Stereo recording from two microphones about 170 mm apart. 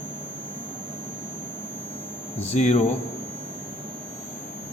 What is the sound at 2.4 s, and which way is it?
Speech, 40° left (ahead or behind).